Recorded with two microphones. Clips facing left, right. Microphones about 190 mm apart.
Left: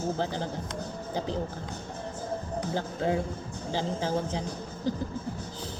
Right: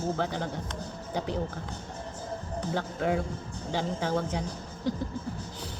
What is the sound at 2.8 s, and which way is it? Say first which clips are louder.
A man's voice: even; 30° left (ahead or behind).